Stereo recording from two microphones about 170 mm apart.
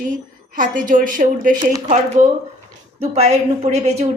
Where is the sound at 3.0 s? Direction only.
40° right (ahead or behind).